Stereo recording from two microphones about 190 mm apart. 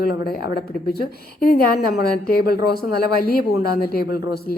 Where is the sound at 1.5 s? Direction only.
55° left (ahead or behind).